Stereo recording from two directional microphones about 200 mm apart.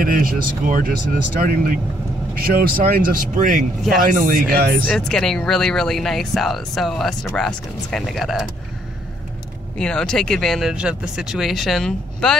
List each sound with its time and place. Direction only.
0.0 s speech: 45° right (ahead or behind)
4.8 s speech: 5° left (ahead or behind)
9.8 s speech: 5° left (ahead or behind)